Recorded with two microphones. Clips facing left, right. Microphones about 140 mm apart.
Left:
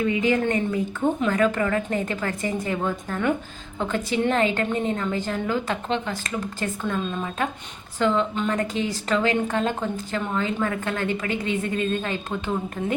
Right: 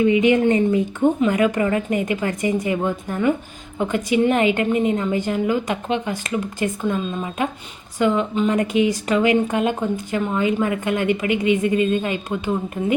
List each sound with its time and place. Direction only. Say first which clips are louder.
0.0 s a woman's voice: right 6 dB; 20° right (ahead or behind)